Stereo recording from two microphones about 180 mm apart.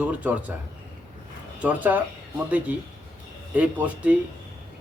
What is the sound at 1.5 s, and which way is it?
A man's voice, 10° right (ahead or behind).